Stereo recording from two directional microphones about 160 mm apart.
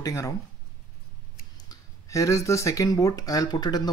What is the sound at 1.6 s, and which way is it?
Speech, 20° left (ahead or behind).